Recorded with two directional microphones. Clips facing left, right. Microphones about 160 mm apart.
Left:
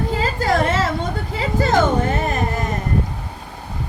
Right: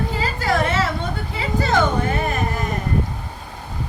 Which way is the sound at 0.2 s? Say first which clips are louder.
Left 2 dB; 45° left (ahead or behind).